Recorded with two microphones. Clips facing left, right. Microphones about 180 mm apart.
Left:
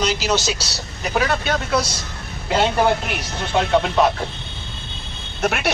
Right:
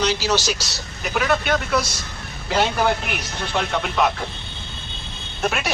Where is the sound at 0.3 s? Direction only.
20° left (ahead or behind).